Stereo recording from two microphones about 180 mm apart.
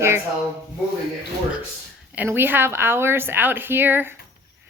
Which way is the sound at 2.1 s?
10° right (ahead or behind).